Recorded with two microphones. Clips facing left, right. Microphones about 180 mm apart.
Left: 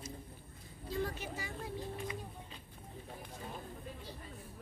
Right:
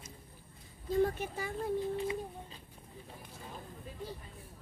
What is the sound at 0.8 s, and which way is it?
Speech, 50° right (ahead or behind).